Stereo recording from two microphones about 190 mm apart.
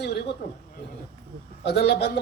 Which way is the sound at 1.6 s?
60° left (ahead or behind).